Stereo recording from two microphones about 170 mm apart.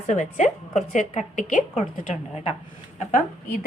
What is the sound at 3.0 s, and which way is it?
Speech, 45° left (ahead or behind).